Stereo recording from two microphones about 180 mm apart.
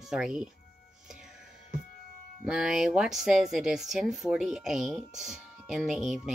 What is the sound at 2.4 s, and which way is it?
Speech, 5° right (ahead or behind).